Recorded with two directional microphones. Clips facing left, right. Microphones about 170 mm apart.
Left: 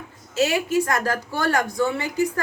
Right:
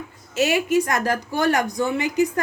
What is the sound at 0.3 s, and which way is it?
A woman's voice, 20° right (ahead or behind).